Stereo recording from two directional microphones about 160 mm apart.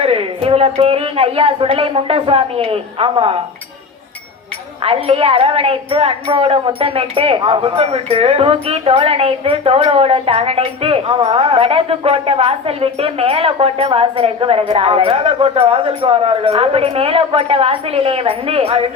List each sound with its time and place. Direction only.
0.0 s a woman's voice: 35° right (ahead or behind)
4.8 s a woman's voice: 35° right (ahead or behind)